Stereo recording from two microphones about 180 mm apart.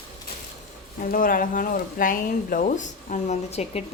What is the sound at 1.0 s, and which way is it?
Speech, 50° left (ahead or behind).